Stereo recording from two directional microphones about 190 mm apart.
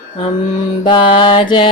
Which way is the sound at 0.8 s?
25° left (ahead or behind).